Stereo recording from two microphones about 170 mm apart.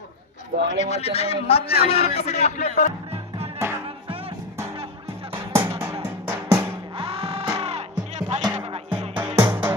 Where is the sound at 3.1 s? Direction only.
35° right (ahead or behind).